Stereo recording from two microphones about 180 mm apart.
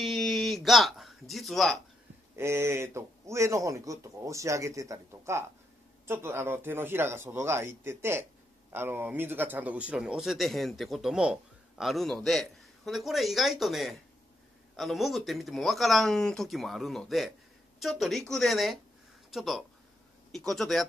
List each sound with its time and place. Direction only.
0.0 s music: centre (ahead or behind)
2.3 s speech: 15° right (ahead or behind); by 20.8 s centre (ahead or behind)